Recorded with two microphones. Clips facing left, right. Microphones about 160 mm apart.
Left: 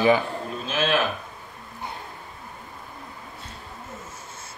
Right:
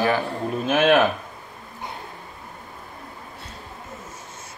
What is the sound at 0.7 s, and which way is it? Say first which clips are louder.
Speech: right 8 dB; 55° right (ahead or behind).